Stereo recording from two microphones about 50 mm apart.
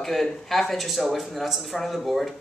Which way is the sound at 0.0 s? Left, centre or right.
Centre.